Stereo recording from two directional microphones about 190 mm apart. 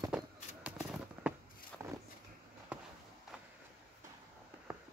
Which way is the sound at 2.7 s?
5° right (ahead or behind).